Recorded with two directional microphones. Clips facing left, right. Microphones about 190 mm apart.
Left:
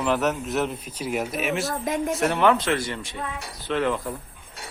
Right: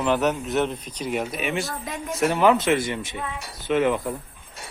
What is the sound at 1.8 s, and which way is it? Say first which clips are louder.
Speech: left 7 dB; 45° left (ahead or behind).